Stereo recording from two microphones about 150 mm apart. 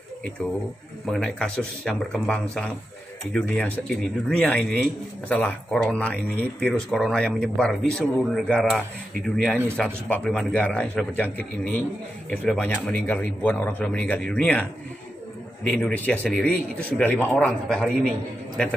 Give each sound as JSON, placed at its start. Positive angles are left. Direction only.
{"t": 1.0, "sound": "a man's voice", "side_deg": 5}